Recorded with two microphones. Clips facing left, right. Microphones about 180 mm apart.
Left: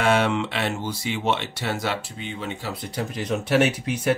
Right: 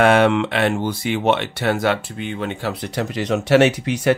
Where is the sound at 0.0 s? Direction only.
60° right (ahead or behind).